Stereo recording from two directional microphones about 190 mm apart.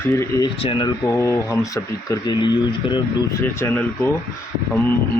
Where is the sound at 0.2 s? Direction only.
20° left (ahead or behind).